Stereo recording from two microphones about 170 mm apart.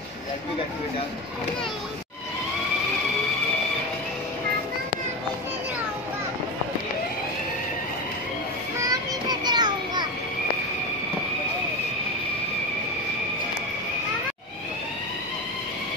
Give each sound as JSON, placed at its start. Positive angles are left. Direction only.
{"t": 8.8, "sound": "child singing", "side_deg": -25}